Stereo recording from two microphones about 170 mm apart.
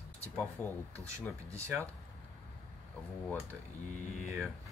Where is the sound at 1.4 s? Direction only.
15° right (ahead or behind).